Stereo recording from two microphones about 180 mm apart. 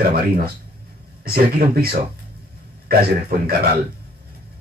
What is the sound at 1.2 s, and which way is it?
Speech, 60° right (ahead or behind).